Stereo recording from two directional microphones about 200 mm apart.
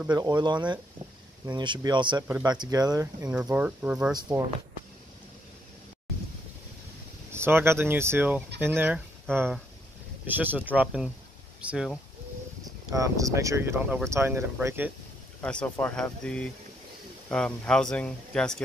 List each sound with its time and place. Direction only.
0.1 s speech: 20° right (ahead or behind)
4.1 s speech: 20° right (ahead or behind)
7.3 s speech: 10° right (ahead or behind)
10.2 s speech: 10° right (ahead or behind)
12.6 s speech: 15° right (ahead or behind)
15.4 s speech: 5° left (ahead or behind)